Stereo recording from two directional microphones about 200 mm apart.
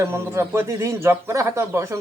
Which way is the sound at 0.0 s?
15° right (ahead or behind).